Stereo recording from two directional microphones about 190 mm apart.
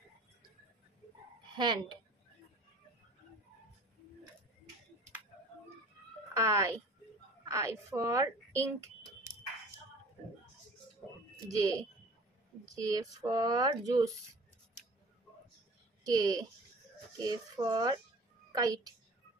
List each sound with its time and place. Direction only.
1.6 s speech: 25° right (ahead or behind)
6.3 s speech: 15° right (ahead or behind)
11.5 s speech: 20° right (ahead or behind)
16.0 s a woman's voice: 20° right (ahead or behind)